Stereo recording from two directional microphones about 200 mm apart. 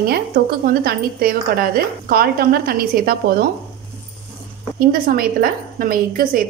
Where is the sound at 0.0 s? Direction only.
45° right (ahead or behind).